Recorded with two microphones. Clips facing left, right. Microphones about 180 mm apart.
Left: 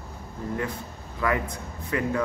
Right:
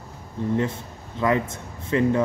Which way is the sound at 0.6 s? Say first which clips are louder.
Right 5 dB; 25° right (ahead or behind).